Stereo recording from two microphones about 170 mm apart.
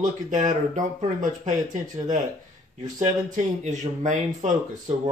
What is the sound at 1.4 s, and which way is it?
Speech, 50° right (ahead or behind).